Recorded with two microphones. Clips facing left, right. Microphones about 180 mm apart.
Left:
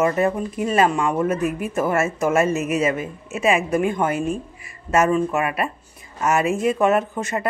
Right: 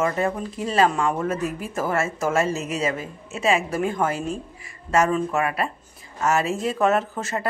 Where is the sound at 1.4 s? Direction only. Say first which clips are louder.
Left 4 dB; 60° left (ahead or behind).